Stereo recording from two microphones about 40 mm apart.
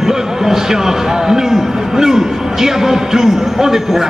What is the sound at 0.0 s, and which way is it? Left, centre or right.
Speech, centre.